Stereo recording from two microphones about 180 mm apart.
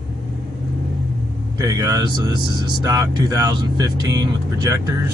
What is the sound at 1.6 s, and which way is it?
Speech, 20° right (ahead or behind).